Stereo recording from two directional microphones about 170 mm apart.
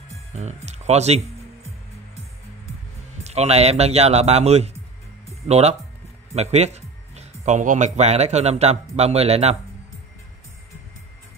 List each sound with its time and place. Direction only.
0.1 s speech: 40° right (ahead or behind)
3.3 s speech: 40° right (ahead or behind)